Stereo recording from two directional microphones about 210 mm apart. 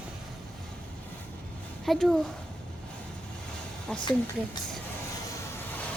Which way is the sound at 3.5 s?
5° left (ahead or behind).